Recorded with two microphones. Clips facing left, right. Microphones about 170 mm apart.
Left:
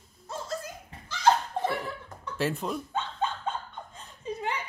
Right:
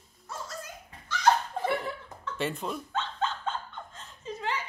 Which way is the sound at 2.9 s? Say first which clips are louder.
Left 1 dB; 15° left (ahead or behind).